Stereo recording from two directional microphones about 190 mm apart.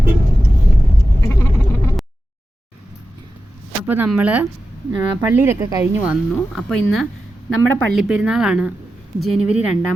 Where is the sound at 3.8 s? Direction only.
10° right (ahead or behind).